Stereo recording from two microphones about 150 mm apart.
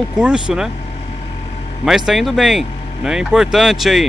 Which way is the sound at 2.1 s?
Centre (ahead or behind).